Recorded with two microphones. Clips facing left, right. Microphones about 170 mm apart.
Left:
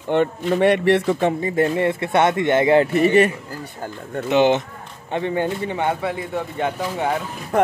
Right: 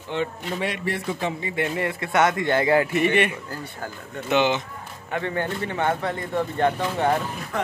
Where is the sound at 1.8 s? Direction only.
25° left (ahead or behind).